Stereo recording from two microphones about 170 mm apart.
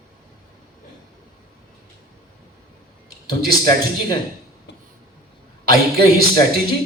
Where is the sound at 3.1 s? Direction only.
60° right (ahead or behind).